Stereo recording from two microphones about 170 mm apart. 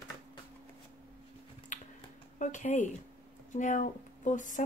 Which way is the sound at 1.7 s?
45° left (ahead or behind).